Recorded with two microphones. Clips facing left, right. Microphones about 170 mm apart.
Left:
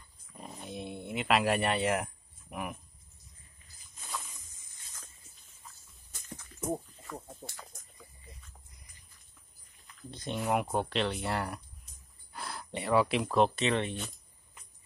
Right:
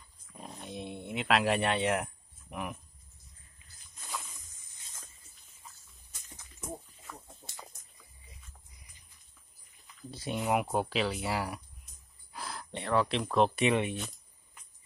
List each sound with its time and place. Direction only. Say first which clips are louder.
0.3 s a sound: even; centre (ahead or behind)
8.0 s dog: left 5 dB; centre (ahead or behind)
9.8 s speech: right 1 dB; 5° right (ahead or behind)
13.6 s speech: right 2 dB; 10° right (ahead or behind)